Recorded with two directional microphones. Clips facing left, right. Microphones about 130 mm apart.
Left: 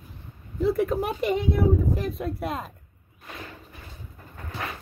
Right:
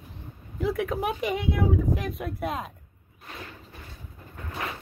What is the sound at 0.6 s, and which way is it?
Speech, centre (ahead or behind).